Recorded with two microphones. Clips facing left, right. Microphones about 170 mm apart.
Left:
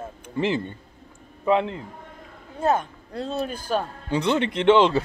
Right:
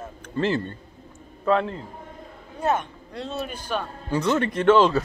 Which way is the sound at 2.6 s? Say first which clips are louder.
Left 2 dB; 35° left (ahead or behind).